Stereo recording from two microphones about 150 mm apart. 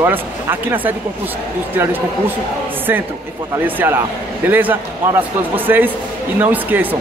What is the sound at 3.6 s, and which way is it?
Speech, 15° right (ahead or behind).